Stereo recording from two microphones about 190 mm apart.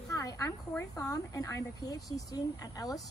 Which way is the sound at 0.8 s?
15° left (ahead or behind).